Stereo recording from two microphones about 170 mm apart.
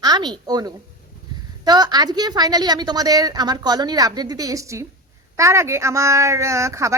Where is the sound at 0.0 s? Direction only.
25° right (ahead or behind).